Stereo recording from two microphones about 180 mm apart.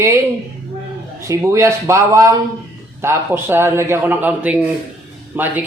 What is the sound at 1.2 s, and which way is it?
A man's voice, 15° right (ahead or behind).